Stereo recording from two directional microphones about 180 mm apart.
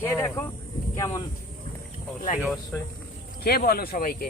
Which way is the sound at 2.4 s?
Centre (ahead or behind).